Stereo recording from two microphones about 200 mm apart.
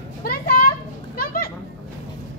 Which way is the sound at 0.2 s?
45° left (ahead or behind).